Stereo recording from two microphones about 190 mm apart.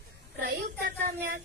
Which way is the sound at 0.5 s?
55° right (ahead or behind).